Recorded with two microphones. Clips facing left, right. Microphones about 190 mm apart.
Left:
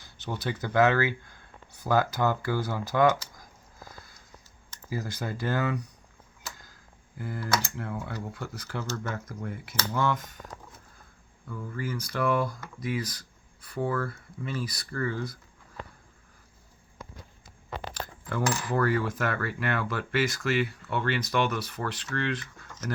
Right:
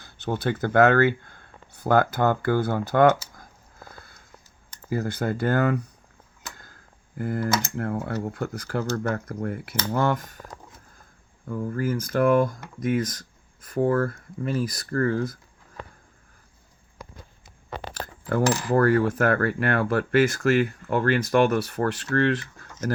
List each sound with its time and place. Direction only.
0.0 s speech: 55° right (ahead or behind)
3.8 s sniff: 60° right (ahead or behind)
4.9 s speech: 60° right (ahead or behind)
7.2 s coin: 50° right (ahead or behind)
11.4 s coin: 45° right (ahead or behind)
17.7 s coin: 50° right (ahead or behind)